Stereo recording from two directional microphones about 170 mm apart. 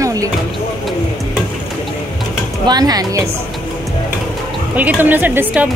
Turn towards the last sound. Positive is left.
turn(degrees=-10)  # may be behind; listen again after turning